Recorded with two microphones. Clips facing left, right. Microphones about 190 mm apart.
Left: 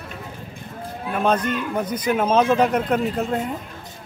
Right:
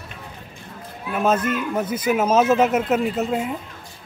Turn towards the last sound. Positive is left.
turn(degrees=-5)  # may be behind; listen again after turning